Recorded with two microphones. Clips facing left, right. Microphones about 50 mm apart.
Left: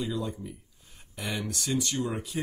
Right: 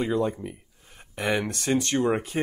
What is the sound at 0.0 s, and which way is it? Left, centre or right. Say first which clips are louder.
Speech: right 7 dB; right.